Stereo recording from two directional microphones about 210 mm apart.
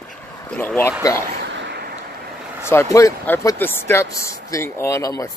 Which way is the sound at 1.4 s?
55° right (ahead or behind).